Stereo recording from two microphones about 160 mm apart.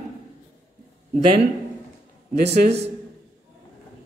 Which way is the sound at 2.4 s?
90° right.